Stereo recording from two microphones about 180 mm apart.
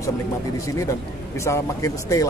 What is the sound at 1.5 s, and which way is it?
Speech, 15° left (ahead or behind).